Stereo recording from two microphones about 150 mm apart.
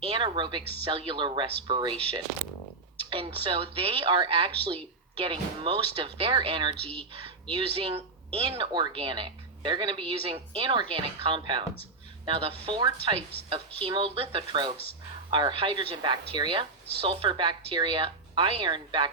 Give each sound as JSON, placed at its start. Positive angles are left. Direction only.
{"t": 0.1, "sound": "a woman's voice", "side_deg": -30}
{"t": 6.8, "sound": "speech", "side_deg": 10}
{"t": 7.5, "sound": "a woman's voice", "side_deg": -35}